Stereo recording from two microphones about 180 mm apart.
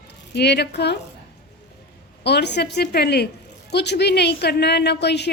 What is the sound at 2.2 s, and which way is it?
A woman's voice, 70° left (ahead or behind).